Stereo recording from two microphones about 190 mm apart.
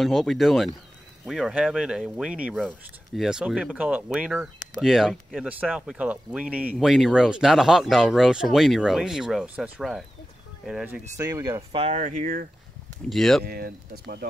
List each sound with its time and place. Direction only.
0.0 s speech: centre (ahead or behind)
11.1 s speech: 15° right (ahead or behind)
11.7 s speech: 35° right (ahead or behind)
13.1 s speech: centre (ahead or behind)
13.5 s speech: 55° right (ahead or behind)